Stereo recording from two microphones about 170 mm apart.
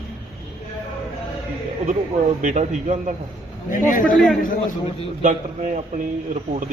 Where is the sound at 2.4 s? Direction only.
45° right (ahead or behind).